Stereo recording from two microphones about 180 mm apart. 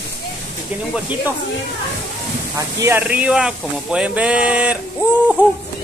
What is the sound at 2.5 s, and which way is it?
Speech, 15° right (ahead or behind).